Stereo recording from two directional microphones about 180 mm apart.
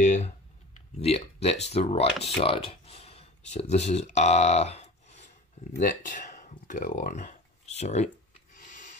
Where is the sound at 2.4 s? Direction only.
30° left (ahead or behind).